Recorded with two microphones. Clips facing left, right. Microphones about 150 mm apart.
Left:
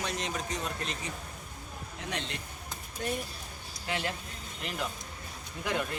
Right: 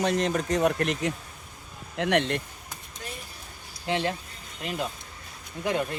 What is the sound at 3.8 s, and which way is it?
Speech, 25° right (ahead or behind).